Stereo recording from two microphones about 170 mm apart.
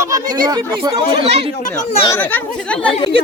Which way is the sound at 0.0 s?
20° right (ahead or behind).